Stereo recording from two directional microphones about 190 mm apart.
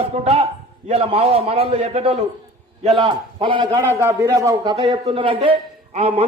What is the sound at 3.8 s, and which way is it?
A man's voice, 10° right (ahead or behind).